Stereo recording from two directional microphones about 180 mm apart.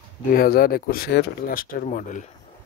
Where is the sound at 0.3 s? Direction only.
55° left (ahead or behind).